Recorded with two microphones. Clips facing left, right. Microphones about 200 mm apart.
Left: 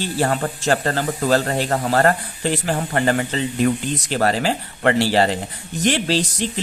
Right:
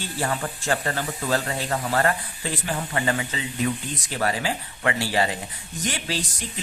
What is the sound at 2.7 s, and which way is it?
Speech, 60° left (ahead or behind).